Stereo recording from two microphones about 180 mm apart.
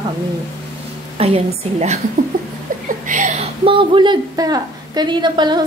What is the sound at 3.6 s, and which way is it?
A woman's voice, 30° right (ahead or behind).